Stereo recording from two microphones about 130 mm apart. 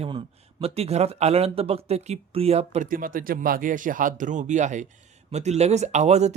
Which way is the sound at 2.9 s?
90° right.